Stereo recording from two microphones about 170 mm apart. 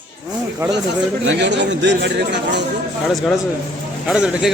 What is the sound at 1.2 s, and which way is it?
Speech, 90° right.